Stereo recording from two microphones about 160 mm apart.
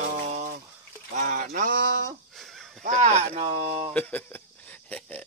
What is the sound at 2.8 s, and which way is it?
Speech, 50° right (ahead or behind).